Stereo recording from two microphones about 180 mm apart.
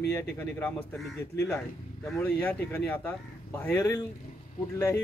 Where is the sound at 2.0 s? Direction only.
10° left (ahead or behind).